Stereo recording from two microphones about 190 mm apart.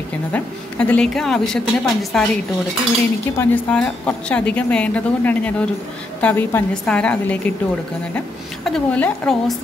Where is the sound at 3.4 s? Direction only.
5° left (ahead or behind).